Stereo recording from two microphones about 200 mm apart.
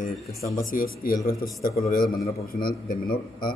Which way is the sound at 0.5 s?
45° left (ahead or behind).